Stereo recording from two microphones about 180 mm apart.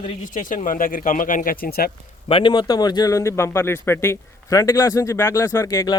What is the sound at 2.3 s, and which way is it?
A man's voice, 25° left (ahead or behind).